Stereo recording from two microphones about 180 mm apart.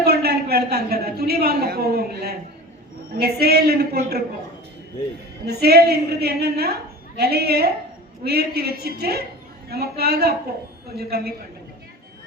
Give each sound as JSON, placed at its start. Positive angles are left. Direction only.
{"t": 0.0, "sound": "a man's voice", "side_deg": -65}
{"t": 5.5, "sound": "a man's voice", "side_deg": -60}